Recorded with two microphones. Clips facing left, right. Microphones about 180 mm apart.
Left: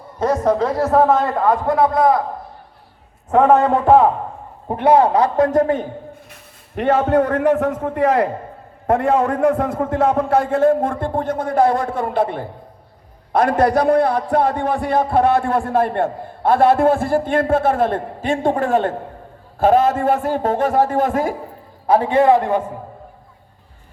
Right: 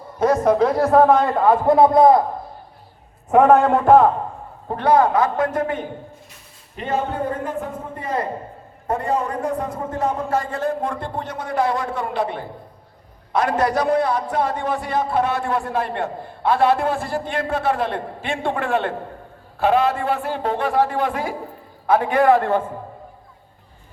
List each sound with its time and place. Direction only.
0.2 s a man's voice: 10° right (ahead or behind)
0.7 s a man's voice: 5° left (ahead or behind)
1.6 s a man's voice: 25° right (ahead or behind)
3.3 s a man's voice: 10° right (ahead or behind)
4.7 s a man's voice: 25° left (ahead or behind); by 5.8 s 40° left (ahead or behind)
6.7 s a man's voice: 75° left (ahead or behind); by 21.3 s 45° left (ahead or behind)
21.8 s a man's voice: 30° left (ahead or behind)